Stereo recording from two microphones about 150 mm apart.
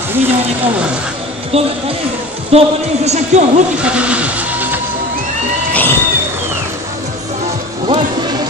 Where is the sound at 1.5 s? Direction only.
40° right (ahead or behind).